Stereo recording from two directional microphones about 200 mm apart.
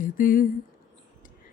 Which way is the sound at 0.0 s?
45° left (ahead or behind).